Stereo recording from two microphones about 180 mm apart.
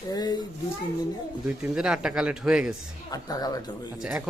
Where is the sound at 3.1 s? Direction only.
20° left (ahead or behind).